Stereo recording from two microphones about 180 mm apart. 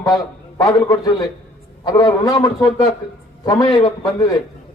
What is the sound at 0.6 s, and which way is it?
A man's voice, 20° left (ahead or behind).